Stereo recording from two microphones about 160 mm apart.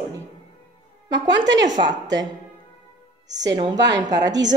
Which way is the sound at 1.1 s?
90° right.